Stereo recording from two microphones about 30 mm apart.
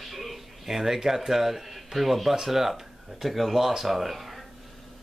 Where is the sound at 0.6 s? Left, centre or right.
Centre.